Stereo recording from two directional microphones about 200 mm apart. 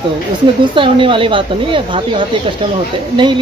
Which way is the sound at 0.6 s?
25° right (ahead or behind).